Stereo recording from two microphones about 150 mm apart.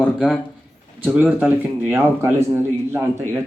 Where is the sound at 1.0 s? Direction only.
10° right (ahead or behind).